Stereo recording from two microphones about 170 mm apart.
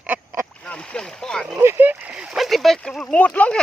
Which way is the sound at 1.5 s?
15° right (ahead or behind).